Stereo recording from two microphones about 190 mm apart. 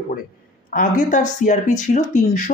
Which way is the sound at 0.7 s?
45° left (ahead or behind).